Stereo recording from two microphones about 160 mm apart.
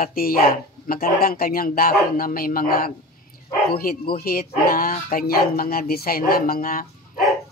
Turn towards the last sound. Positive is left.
turn(degrees=60)  # may be behind; listen again after turning